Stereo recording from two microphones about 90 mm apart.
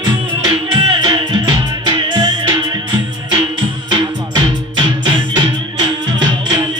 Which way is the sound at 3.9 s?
60° right (ahead or behind).